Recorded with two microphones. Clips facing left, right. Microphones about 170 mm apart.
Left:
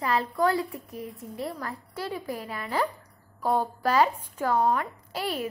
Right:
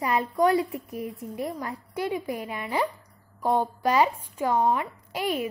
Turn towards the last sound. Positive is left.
turn(degrees=-10)  # may be behind; listen again after turning